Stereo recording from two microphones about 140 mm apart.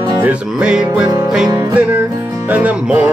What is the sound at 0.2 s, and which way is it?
Music, 10° right (ahead or behind).